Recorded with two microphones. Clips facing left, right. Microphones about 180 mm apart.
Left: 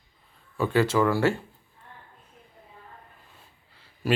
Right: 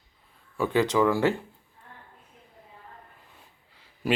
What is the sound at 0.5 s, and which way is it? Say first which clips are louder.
Speech: even; 15° right (ahead or behind).